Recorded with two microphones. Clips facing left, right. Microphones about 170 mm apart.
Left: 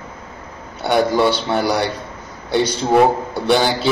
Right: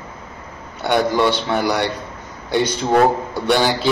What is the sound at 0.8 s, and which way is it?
A man's voice, 5° left (ahead or behind).